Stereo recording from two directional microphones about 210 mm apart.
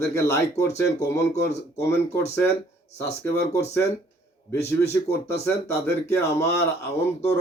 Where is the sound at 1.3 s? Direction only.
30° left (ahead or behind).